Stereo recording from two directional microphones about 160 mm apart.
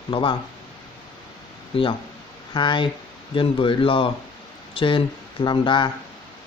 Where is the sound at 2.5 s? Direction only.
30° left (ahead or behind).